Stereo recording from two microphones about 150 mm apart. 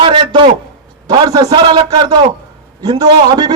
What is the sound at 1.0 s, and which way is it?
A man's voice, 25° right (ahead or behind).